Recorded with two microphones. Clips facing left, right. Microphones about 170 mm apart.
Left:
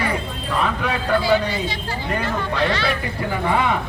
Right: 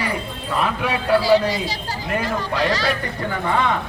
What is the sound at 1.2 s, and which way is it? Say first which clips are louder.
Speech: right 2 dB; 35° right (ahead or behind).